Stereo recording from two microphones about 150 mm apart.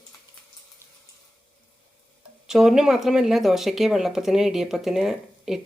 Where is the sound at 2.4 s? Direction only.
Centre (ahead or behind).